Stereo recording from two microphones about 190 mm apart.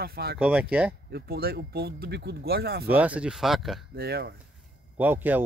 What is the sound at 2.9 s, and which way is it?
Speech, 10° right (ahead or behind).